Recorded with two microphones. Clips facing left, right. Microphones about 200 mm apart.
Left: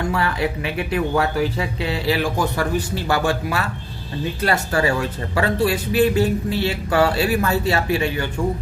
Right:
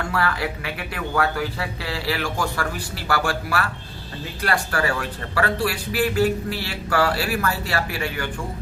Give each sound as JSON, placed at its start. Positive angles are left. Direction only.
{"t": 0.0, "sound": "speech", "side_deg": 20}